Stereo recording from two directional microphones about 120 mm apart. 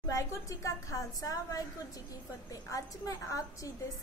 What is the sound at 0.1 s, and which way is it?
A woman's voice, 25° left (ahead or behind).